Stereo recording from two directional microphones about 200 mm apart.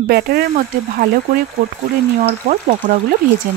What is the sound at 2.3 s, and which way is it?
Speech, 35° right (ahead or behind).